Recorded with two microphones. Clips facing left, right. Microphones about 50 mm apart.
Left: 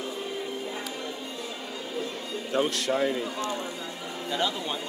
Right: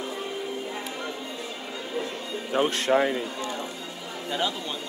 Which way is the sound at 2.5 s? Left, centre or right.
Right.